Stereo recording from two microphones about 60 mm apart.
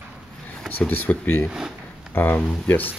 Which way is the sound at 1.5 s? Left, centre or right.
Centre.